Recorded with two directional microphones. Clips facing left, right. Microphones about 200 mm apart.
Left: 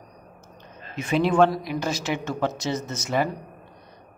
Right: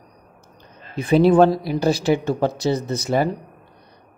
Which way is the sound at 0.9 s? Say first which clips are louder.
Right 6 dB; 35° right (ahead or behind).